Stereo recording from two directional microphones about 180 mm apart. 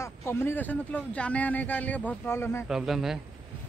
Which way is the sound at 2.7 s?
Centre (ahead or behind).